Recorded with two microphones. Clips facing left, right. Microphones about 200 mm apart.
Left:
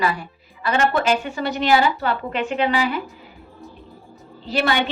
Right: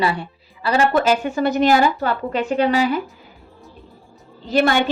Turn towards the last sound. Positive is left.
turn(degrees=-45)  # may be behind; listen again after turning